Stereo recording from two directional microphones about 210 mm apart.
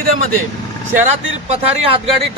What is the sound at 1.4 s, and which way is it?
Speech, 30° right (ahead or behind).